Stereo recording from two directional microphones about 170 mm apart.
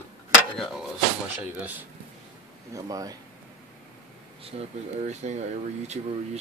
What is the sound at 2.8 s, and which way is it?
Speech, 20° right (ahead or behind).